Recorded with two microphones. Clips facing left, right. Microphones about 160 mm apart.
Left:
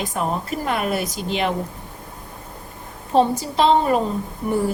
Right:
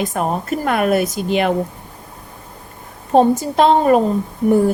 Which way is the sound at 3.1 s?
50° right (ahead or behind).